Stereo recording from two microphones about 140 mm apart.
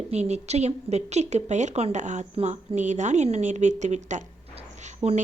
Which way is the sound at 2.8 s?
60° right (ahead or behind).